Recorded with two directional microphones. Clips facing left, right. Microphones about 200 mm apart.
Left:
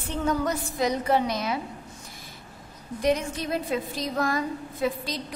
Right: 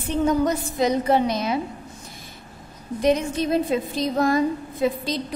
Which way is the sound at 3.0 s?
20° right (ahead or behind).